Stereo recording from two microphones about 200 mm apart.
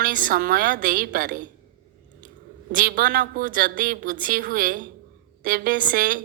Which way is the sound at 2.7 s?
45° right (ahead or behind).